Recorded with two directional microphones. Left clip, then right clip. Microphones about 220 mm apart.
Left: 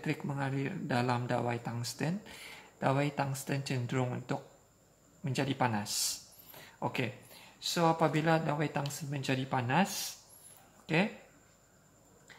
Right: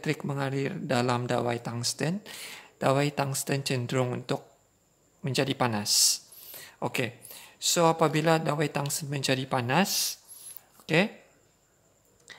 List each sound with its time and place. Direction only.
0.0 s speech: 45° right (ahead or behind)